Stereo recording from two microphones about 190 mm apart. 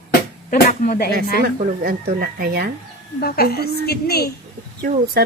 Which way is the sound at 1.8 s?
50° right (ahead or behind).